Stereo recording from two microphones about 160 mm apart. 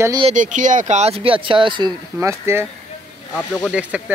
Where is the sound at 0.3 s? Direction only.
50° right (ahead or behind); by 2.0 s 30° right (ahead or behind).